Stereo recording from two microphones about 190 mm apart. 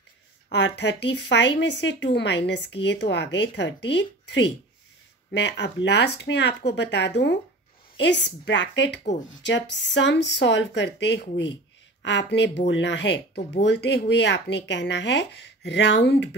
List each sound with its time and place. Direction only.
0.5 s speech: 65° left (ahead or behind)
9.0 s speech: 40° left (ahead or behind)
9.5 s speech: 70° left (ahead or behind)